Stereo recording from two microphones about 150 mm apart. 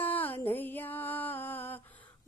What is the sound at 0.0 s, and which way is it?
Music, 10° left (ahead or behind).